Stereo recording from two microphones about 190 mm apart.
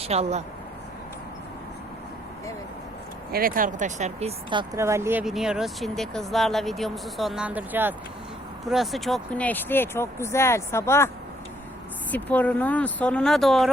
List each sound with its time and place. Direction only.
0.0 s speech: 35° right (ahead or behind)
3.3 s speech: 50° right (ahead or behind); by 4.8 s 25° right (ahead or behind)
4.8 s speech: 15° right (ahead or behind)
5.2 s speech: centre (ahead or behind); by 11.1 s 15° left (ahead or behind)
12.1 s speech: 10° left (ahead or behind)